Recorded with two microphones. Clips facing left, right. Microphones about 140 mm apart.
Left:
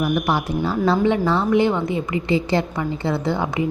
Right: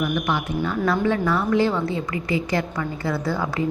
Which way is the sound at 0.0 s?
35° left (ahead or behind).